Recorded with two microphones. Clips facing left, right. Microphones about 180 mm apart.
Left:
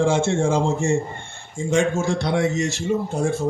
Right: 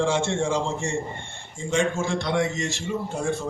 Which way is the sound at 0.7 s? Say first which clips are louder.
Left 7 dB; 5° left (ahead or behind).